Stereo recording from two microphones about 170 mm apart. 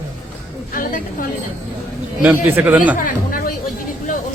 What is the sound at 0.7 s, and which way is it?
Speech, 55° left (ahead or behind).